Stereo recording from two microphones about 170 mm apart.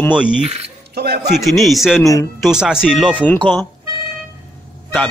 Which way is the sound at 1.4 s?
Centre (ahead or behind).